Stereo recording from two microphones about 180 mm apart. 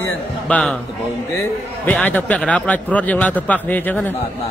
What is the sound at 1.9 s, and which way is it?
A man's voice, 10° left (ahead or behind).